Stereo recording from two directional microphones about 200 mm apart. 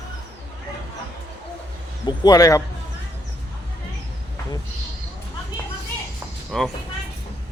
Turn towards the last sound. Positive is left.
turn(degrees=0)  # may be behind; listen again after turning